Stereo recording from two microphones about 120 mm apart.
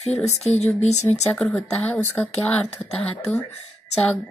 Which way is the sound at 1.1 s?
5° left (ahead or behind).